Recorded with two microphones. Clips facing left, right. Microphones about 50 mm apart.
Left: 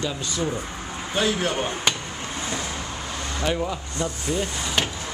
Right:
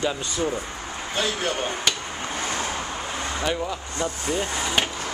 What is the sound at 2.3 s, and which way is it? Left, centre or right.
Vehicle, right.